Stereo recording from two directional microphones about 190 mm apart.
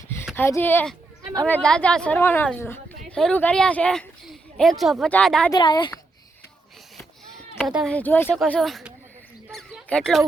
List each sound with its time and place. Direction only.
0.3 s speech: 10° left (ahead or behind)
5.5 s speech: 25° left (ahead or behind)
7.6 s speech: centre (ahead or behind)
7.9 s speech: 10° left (ahead or behind)
9.5 s a sound: centre (ahead or behind)